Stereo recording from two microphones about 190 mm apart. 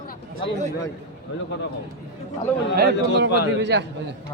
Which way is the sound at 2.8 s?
65° right (ahead or behind).